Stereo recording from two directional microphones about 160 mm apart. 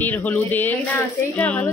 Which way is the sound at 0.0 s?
10° left (ahead or behind).